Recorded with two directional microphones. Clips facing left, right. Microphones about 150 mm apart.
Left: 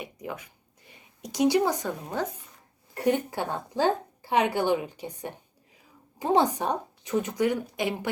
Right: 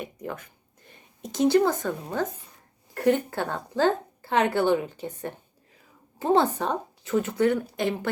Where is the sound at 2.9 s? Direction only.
15° left (ahead or behind).